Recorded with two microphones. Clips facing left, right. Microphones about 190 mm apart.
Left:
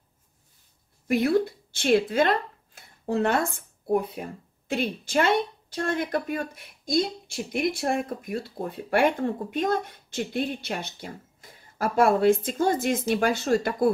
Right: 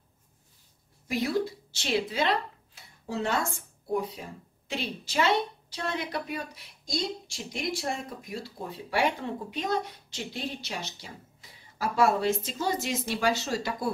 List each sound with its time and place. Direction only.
1.0 s speech: 55° left (ahead or behind)